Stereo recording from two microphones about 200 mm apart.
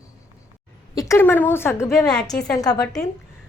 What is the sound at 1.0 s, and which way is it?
A woman's voice, 15° left (ahead or behind).